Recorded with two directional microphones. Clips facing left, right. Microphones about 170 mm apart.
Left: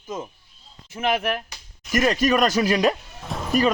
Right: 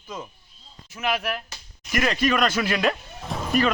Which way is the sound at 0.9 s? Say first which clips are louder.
Left 3 dB; 50° left (ahead or behind).